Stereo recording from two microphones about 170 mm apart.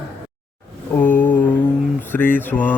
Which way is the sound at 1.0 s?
10° left (ahead or behind).